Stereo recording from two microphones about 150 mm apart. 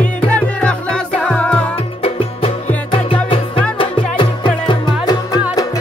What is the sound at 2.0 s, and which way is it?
Music, 40° left (ahead or behind).